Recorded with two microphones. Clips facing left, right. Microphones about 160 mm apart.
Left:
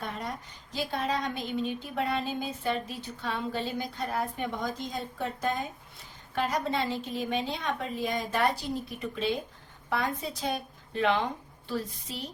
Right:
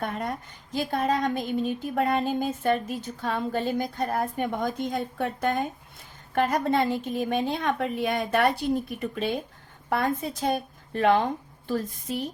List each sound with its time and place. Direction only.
0.0 s a woman's voice: 55° right (ahead or behind)